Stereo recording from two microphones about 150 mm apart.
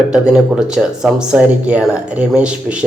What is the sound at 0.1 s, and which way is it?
Speech, 5° right (ahead or behind).